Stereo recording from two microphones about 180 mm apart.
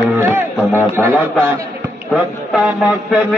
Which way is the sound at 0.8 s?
15° right (ahead or behind).